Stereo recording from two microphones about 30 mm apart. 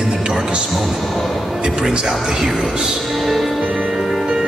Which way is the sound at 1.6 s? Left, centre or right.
Right.